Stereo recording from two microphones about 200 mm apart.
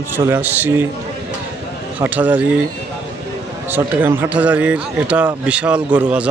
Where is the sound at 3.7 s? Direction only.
10° right (ahead or behind).